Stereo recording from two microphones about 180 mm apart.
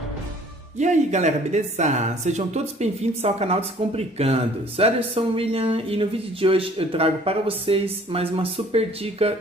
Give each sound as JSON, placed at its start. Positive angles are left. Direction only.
{"t": 0.7, "sound": "speech", "side_deg": -40}